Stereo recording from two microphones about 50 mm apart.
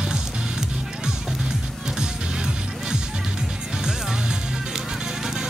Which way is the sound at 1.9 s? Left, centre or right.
Centre.